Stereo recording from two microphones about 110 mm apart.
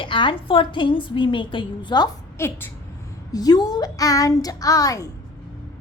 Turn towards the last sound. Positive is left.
turn(degrees=30)  # may be behind; listen again after turning